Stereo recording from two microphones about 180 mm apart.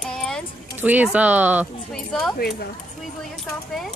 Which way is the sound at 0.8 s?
10° right (ahead or behind).